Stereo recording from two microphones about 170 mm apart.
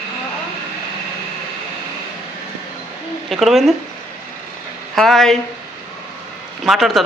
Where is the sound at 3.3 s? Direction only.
Centre (ahead or behind).